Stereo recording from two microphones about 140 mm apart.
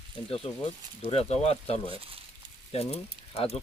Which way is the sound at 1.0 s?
45° left (ahead or behind).